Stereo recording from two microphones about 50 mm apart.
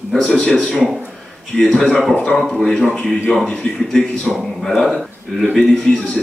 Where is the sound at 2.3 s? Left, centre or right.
Centre.